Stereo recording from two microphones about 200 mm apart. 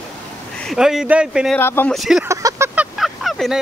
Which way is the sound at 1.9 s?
Centre (ahead or behind).